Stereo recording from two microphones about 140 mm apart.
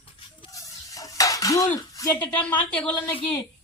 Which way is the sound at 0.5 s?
25° left (ahead or behind).